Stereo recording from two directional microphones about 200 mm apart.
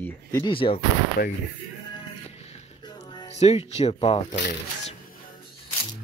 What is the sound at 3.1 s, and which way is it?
Speech, 30° left (ahead or behind).